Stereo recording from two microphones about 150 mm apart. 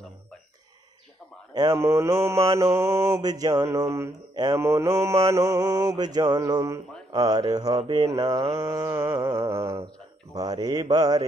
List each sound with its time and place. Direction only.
1.5 s speech: 25° right (ahead or behind)
1.9 s mantra: 15° right (ahead or behind)